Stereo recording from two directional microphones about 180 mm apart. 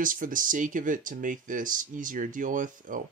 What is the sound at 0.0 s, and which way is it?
Speech, 50° right (ahead or behind).